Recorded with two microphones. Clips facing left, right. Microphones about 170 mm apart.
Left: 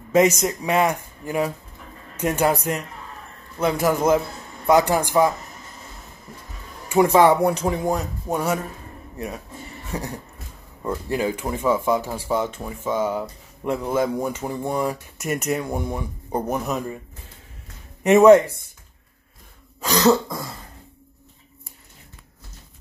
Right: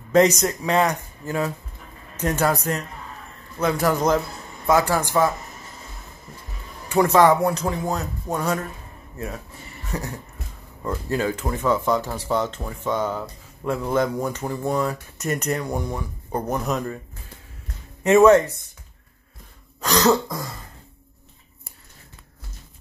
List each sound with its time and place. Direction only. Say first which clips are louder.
0.1 s speech: even; 10° left (ahead or behind)
6.9 s speech: left 1 dB; 15° left (ahead or behind)
9.9 s speech: even; 10° left (ahead or behind)
18.0 s speech: left 2 dB; 15° left (ahead or behind)
19.8 s throat clearing: left 1 dB; 5° left (ahead or behind)